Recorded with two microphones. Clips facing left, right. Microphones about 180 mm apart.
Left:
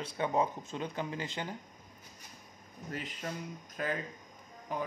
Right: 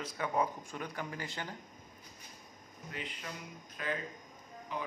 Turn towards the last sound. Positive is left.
turn(degrees=45)  # may be behind; listen again after turning